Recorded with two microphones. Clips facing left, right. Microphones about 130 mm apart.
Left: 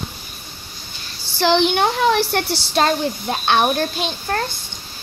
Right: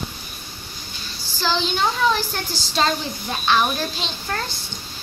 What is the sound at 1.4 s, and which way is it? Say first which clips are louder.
Speech: left 7 dB; 65° left (ahead or behind).